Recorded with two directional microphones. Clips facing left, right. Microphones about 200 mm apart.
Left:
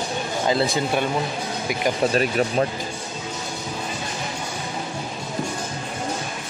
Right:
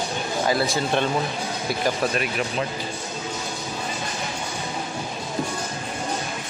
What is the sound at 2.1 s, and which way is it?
Speech, 40° left (ahead or behind).